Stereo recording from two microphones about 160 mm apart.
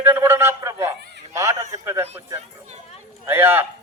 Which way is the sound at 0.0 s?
15° right (ahead or behind).